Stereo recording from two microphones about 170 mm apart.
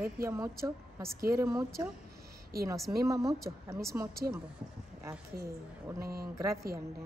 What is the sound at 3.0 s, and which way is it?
A woman's voice, 20° right (ahead or behind).